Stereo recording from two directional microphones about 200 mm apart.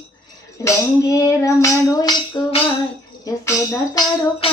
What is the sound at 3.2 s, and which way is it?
Speech, 20° left (ahead or behind).